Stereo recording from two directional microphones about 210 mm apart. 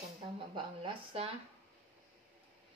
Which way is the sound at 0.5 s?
25° right (ahead or behind).